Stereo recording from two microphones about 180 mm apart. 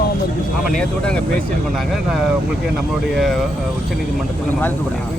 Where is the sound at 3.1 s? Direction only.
Centre (ahead or behind).